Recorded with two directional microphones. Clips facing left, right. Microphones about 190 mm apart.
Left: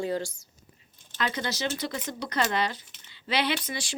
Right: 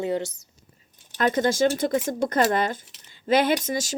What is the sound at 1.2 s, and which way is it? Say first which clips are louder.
Speech: right 10 dB; 45° right (ahead or behind).